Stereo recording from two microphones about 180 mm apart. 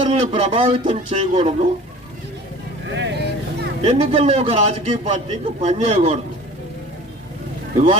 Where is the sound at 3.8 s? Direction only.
35° right (ahead or behind).